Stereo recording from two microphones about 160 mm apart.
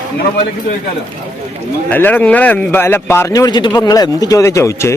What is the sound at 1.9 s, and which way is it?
A man's voice, 10° left (ahead or behind).